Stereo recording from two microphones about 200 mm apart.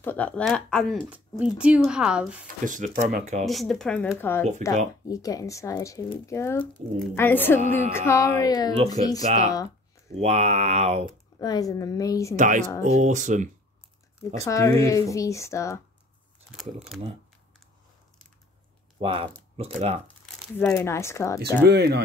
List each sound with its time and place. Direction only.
0.0 s speech: 5° left (ahead or behind)
2.6 s speech: 40° right (ahead or behind)
3.4 s speech: centre (ahead or behind); by 8.7 s 20° left (ahead or behind)
8.7 s speech: 30° right (ahead or behind)
11.3 s speech: 20° left (ahead or behind)
12.4 s speech: 40° right (ahead or behind)
14.3 s speech: 15° left (ahead or behind)
16.5 s speech: centre (ahead or behind)
18.9 s speech: 25° right (ahead or behind)
20.5 s speech: 10° left (ahead or behind)
21.6 s speech: 55° right (ahead or behind)